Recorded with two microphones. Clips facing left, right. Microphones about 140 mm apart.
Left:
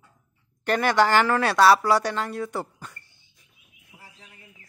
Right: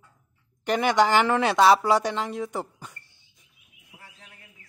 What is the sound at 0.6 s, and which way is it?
Speech, 15° right (ahead or behind).